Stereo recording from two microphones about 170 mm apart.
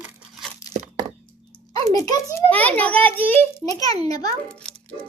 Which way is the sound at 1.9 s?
20° left (ahead or behind).